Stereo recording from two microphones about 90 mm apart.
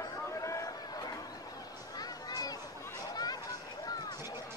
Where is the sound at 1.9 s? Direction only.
45° left (ahead or behind).